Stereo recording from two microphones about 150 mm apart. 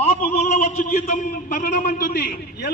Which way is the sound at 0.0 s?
45° left (ahead or behind).